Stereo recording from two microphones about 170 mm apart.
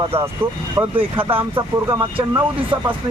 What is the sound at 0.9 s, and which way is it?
Speech, 30° right (ahead or behind).